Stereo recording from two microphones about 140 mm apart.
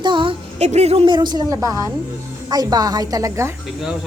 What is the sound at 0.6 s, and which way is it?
Speech, 50° right (ahead or behind).